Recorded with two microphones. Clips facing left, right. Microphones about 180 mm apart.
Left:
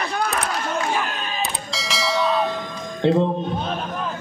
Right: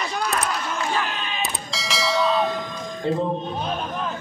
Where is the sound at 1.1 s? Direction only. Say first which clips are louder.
Left 2 dB; 40° left (ahead or behind).